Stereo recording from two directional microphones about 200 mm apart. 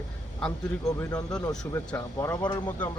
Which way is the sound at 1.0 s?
15° left (ahead or behind).